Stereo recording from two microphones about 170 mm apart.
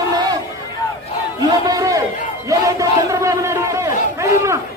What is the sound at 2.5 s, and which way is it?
Crowd, 20° right (ahead or behind).